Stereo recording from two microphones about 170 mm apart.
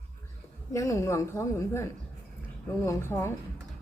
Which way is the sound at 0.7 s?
15° left (ahead or behind).